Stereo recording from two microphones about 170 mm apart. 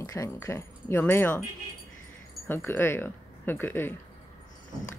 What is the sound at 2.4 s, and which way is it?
Speech, 15° left (ahead or behind).